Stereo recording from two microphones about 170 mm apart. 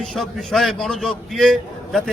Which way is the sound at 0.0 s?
Centre (ahead or behind).